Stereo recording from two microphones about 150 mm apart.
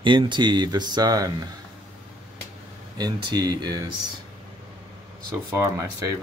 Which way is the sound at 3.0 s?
25° right (ahead or behind).